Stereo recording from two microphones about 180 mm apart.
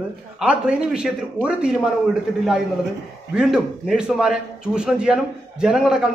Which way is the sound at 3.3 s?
5° right (ahead or behind).